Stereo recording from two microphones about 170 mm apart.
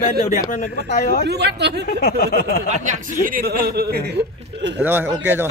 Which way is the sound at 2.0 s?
60° left (ahead or behind).